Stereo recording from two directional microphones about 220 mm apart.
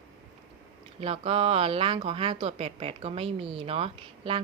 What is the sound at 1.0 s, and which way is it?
Speech, 25° right (ahead or behind).